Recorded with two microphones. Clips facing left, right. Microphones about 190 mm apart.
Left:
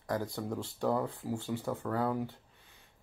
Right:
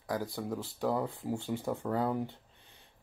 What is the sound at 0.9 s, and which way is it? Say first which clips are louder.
Speech: even; 20° right (ahead or behind).